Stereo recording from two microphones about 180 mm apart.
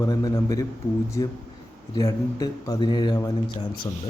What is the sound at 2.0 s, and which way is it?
Speech, 20° left (ahead or behind).